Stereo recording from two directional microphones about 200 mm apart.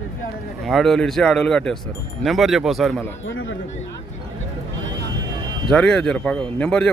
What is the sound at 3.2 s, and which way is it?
Speech, 70° left (ahead or behind).